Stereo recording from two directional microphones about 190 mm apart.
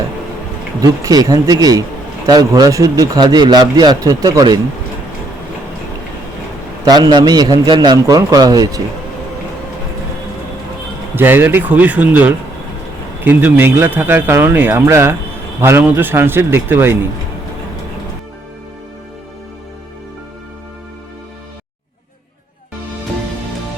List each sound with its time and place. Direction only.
0.8 s speech: 20° right (ahead or behind)
6.8 s speech: 20° right (ahead or behind)
11.1 s a man's voice: 10° right (ahead or behind)